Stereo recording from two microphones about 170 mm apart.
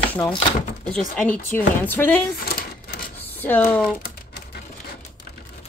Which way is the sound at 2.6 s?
60° left (ahead or behind).